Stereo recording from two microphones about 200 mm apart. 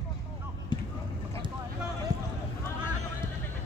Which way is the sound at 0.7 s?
20° left (ahead or behind).